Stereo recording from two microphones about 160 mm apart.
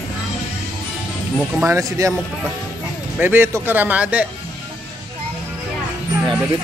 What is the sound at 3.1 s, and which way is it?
Speech, 10° right (ahead or behind).